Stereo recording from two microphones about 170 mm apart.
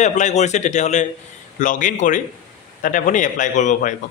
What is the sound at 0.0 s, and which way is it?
A man's voice, 45° left (ahead or behind).